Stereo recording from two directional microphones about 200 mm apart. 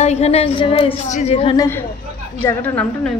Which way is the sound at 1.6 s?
10° left (ahead or behind).